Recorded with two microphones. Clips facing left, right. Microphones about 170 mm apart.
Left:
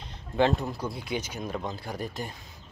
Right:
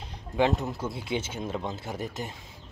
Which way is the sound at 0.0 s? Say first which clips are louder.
Left 1 dB; 15° right (ahead or behind).